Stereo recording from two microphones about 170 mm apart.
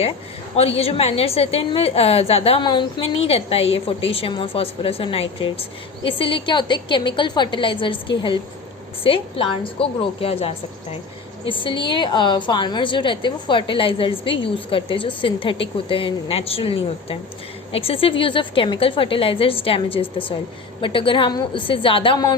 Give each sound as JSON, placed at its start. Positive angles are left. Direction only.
{"t": 0.5, "sound": "a woman's voice", "side_deg": 35}